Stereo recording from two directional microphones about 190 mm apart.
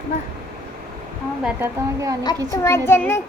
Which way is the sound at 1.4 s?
15° right (ahead or behind).